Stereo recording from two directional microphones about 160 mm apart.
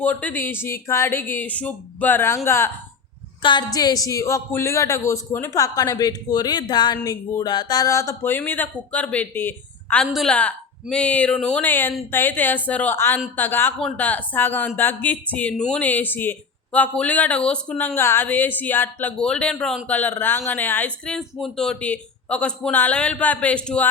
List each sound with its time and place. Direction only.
0.0 s speech: 10° left (ahead or behind)
3.4 s a woman's voice: 25° left (ahead or behind); by 23.9 s 5° left (ahead or behind)